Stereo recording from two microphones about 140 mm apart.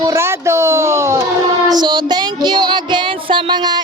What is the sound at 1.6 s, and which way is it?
Child singing, 30° right (ahead or behind).